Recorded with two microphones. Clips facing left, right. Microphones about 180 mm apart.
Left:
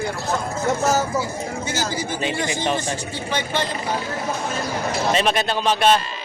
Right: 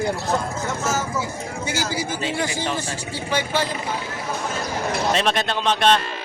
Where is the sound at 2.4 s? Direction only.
20° left (ahead or behind).